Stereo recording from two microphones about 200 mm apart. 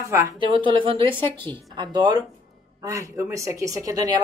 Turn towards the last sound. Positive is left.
turn(degrees=-20)  # may be behind; listen again after turning